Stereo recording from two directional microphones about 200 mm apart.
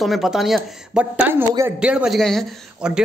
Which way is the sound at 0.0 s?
Centre (ahead or behind).